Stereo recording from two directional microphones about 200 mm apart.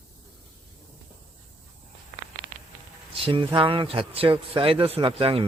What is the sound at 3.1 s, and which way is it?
A man's voice, 25° right (ahead or behind).